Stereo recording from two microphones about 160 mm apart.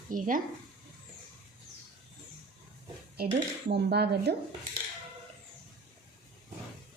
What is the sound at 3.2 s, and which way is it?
Dishes, 80° right.